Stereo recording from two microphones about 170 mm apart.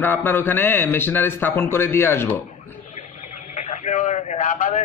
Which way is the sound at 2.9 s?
45° left (ahead or behind).